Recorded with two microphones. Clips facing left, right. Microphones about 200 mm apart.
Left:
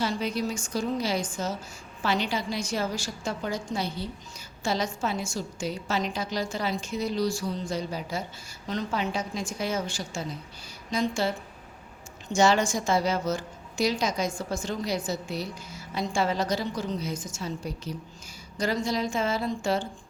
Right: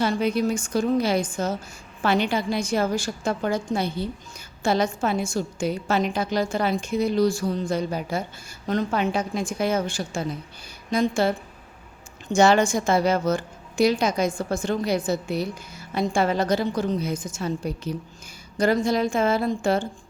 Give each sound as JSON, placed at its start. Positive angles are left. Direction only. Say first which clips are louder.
{"t": 0.0, "sound": "a woman's voice", "louder": "right 6 dB", "side_deg": -55}